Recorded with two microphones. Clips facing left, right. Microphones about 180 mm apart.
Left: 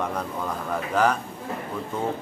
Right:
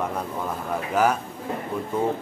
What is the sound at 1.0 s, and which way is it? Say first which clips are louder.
Speech: right 1 dB; 10° right (ahead or behind).